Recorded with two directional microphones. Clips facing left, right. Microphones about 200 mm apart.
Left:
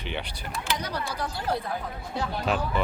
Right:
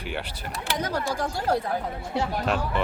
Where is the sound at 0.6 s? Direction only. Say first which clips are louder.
Right 5 dB; 50° right (ahead or behind).